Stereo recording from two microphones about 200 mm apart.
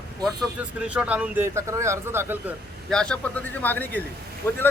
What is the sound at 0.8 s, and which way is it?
Speech, 5° right (ahead or behind).